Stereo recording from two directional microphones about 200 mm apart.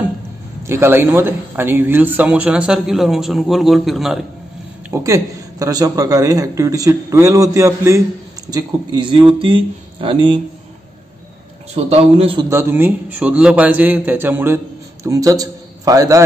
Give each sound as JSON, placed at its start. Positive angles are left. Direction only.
{"t": 0.7, "sound": "speech", "side_deg": -10}
{"t": 4.9, "sound": "speech", "side_deg": -15}
{"t": 11.7, "sound": "speech", "side_deg": -30}
{"t": 12.4, "sound": "a man's voice", "side_deg": -10}